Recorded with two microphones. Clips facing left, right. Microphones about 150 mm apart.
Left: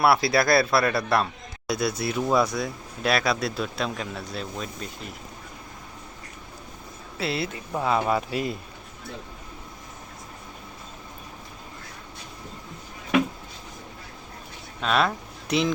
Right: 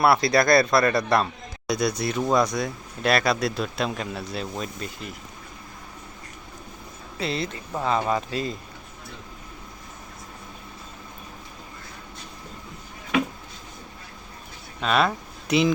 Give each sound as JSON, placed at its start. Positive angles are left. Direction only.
{"t": 0.0, "sound": "a man's voice", "side_deg": 5}
{"t": 7.2, "sound": "speech", "side_deg": 5}
{"t": 14.8, "sound": "speech", "side_deg": 0}